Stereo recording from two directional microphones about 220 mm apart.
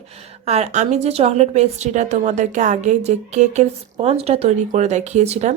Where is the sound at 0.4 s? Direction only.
30° right (ahead or behind).